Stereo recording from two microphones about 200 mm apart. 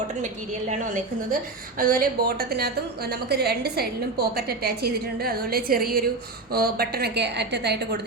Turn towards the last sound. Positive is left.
turn(degrees=-55)  # may be behind; listen again after turning